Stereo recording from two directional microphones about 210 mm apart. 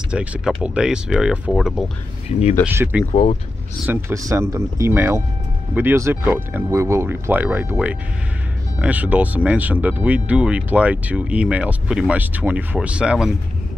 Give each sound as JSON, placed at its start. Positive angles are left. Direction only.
{"t": 0.1, "sound": "speech", "side_deg": -5}
{"t": 3.1, "sound": "speech", "side_deg": 35}
{"t": 3.8, "sound": "speech", "side_deg": -10}